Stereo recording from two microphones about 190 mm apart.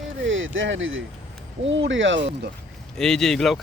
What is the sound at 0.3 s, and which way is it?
Speech, 85° right.